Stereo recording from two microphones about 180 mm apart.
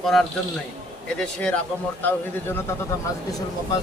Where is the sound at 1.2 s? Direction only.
5° left (ahead or behind).